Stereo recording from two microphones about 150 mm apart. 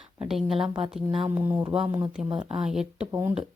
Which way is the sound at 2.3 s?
35° right (ahead or behind).